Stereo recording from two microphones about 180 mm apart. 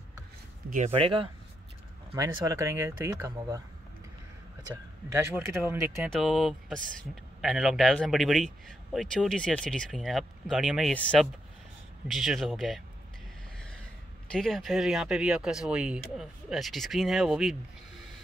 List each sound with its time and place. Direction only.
0.7 s speech: 40° right (ahead or behind)
2.1 s speech: 15° right (ahead or behind)
4.6 s speech: 15° right (ahead or behind)
6.0 s speech: centre (ahead or behind)
14.3 s speech: centre (ahead or behind)